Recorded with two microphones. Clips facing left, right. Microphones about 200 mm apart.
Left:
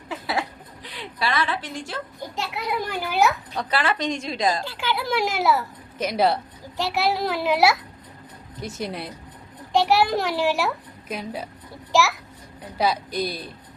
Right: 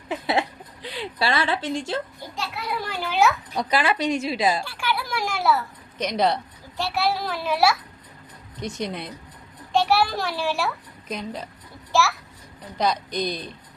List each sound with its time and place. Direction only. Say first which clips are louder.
0.1 s a woman's voice: right 3 dB; 25° right (ahead or behind)
2.3 s a child's voice: left 2 dB; 20° left (ahead or behind)
3.5 s a woman's voice: right 2 dB; 10° right (ahead or behind)
4.6 s a child's voice: left 1 dB; 20° left (ahead or behind)
6.0 s a woman's voice: left 1 dB; 5° left (ahead or behind)
6.7 s a child's voice: left 1 dB; 20° left (ahead or behind)
8.6 s a woman's voice: right 1 dB; 5° left (ahead or behind)
9.7 s a child's voice: left 2 dB; 15° left (ahead or behind)
11.1 s a child's voice: left 1 dB; 5° left (ahead or behind)
12.7 s a child's voice: left 1 dB; 5° left (ahead or behind)